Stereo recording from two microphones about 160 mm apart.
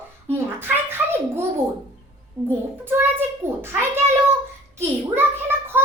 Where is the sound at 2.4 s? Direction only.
15° right (ahead or behind).